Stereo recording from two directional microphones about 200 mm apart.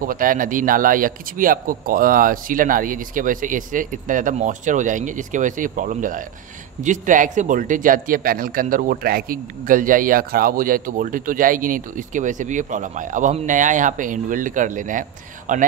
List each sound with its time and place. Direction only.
0.0 s speech: 45° right (ahead or behind)